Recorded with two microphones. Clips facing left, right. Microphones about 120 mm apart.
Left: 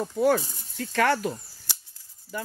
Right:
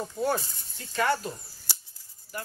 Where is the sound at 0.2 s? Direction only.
85° left.